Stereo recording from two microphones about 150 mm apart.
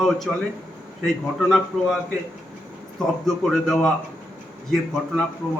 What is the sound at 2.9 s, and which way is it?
A man's voice, centre (ahead or behind).